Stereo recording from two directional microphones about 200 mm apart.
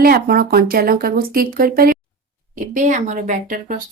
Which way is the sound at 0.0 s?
50° right (ahead or behind).